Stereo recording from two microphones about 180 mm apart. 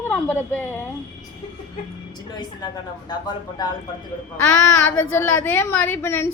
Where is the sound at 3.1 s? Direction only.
25° left (ahead or behind).